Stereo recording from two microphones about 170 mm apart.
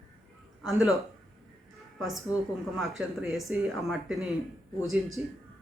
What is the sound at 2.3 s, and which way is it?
Speech, 20° left (ahead or behind).